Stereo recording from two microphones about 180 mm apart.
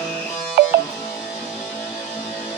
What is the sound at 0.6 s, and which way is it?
Music, 65° right (ahead or behind).